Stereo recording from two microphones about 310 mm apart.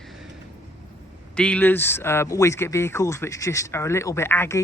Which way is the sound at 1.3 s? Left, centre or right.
Centre.